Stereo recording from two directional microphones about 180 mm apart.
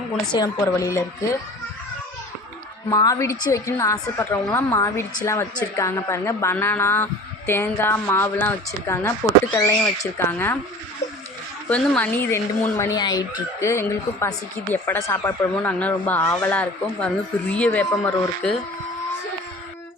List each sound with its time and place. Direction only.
0.3 s a woman's voice: 20° left (ahead or behind)
2.9 s a woman's voice: 20° left (ahead or behind)
11.7 s a woman's voice: 10° left (ahead or behind)